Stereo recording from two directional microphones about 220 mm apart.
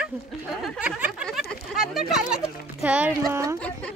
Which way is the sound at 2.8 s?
5° right (ahead or behind).